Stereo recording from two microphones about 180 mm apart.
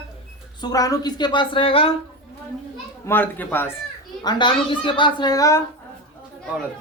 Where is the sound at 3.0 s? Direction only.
10° left (ahead or behind).